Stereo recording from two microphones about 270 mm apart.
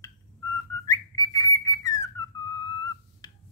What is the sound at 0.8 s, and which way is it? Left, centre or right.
Whistling, centre.